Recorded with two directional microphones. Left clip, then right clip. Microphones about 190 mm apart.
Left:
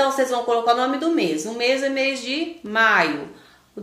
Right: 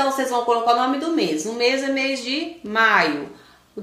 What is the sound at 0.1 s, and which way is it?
A woman's voice, 20° left (ahead or behind).